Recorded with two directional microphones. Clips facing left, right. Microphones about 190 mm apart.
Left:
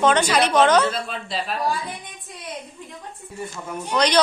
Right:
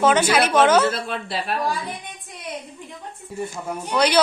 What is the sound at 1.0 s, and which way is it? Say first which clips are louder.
Speech: right 2 dB; 65° right (ahead or behind).